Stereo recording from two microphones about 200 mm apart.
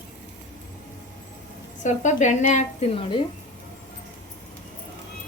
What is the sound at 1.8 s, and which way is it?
A woman's voice, 35° left (ahead or behind).